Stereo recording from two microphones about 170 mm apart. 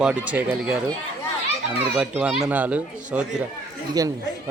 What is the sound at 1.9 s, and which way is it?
Speech, 10° right (ahead or behind).